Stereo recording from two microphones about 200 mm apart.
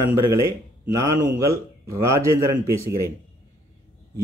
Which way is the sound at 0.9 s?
15° right (ahead or behind).